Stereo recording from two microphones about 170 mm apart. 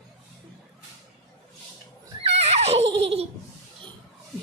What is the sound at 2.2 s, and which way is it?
Neigh, 35° right (ahead or behind).